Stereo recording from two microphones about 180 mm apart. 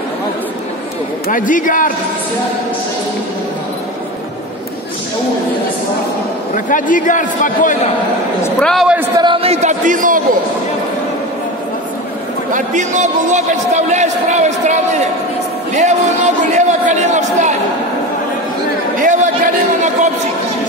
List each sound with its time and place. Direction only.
1.3 s a man's voice: 45° left (ahead or behind)
6.5 s a man's voice: 45° left (ahead or behind)
8.4 s a man's voice: 5° left (ahead or behind)
9.2 s a man's voice: 30° right (ahead or behind); by 10.2 s 50° right (ahead or behind)
12.5 s a man's voice: 45° right (ahead or behind)
18.9 s a sound: 45° right (ahead or behind)